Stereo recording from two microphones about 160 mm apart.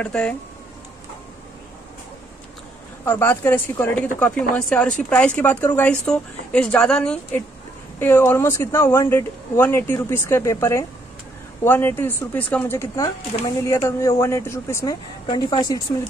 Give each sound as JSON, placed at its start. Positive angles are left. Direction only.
{"t": 0.0, "sound": "a woman's voice", "side_deg": 5}
{"t": 3.1, "sound": "a woman's voice", "side_deg": 15}